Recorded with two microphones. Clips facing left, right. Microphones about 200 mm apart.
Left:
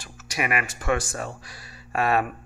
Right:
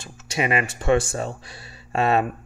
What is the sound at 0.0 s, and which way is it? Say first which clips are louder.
Speech: right 4 dB; 25° right (ahead or behind).